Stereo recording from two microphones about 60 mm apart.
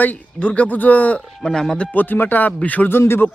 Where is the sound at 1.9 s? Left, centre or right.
Left.